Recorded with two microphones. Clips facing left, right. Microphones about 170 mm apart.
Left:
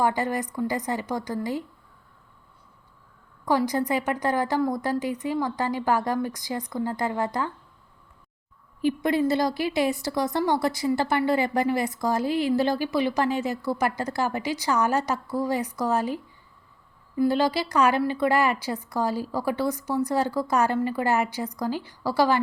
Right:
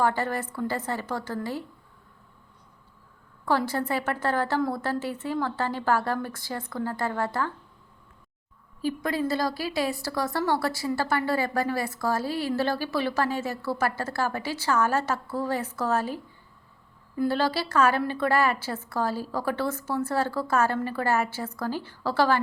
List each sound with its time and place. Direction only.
0.0 s a woman's voice: 15° left (ahead or behind)
3.4 s a woman's voice: 15° left (ahead or behind)
8.8 s a woman's voice: 20° left (ahead or behind)
17.2 s a woman's voice: 15° left (ahead or behind)